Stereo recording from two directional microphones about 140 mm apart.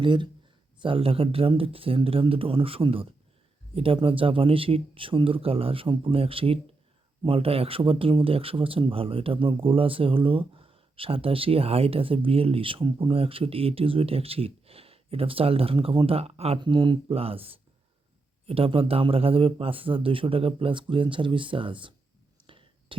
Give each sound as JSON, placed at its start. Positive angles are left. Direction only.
{"t": 0.0, "sound": "speech", "side_deg": -35}
{"t": 16.6, "sound": "speech", "side_deg": -35}
{"t": 22.4, "sound": "whispering", "side_deg": -40}